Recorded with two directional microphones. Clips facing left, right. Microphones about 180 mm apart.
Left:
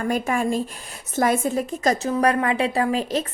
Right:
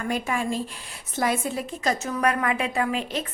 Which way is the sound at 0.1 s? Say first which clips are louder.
Left 4 dB; 45° left (ahead or behind).